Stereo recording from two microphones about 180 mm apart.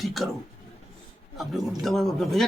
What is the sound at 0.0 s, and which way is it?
Speech, centre (ahead or behind).